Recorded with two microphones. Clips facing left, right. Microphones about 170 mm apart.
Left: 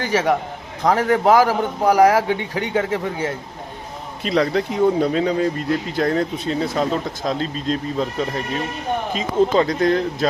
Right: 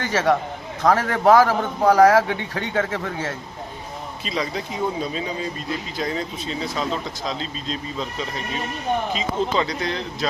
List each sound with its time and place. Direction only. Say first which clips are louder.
0.0 s a man's voice: left 1 dB; 15° left (ahead or behind)
4.2 s speech: left 9 dB; 60° left (ahead or behind)